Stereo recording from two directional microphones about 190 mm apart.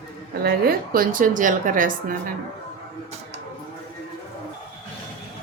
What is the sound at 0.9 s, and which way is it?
A woman's voice, 50° right (ahead or behind).